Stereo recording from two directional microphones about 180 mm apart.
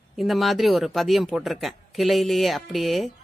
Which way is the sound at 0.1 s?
Centre (ahead or behind).